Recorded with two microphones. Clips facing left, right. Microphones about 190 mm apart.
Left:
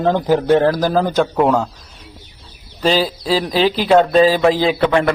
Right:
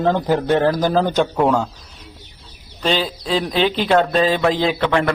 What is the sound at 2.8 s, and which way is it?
A man's voice, 5° left (ahead or behind).